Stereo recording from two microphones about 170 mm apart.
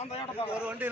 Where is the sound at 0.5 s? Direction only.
5° right (ahead or behind).